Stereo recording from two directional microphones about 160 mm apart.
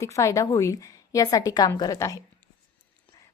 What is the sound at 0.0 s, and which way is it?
Speech, 20° left (ahead or behind).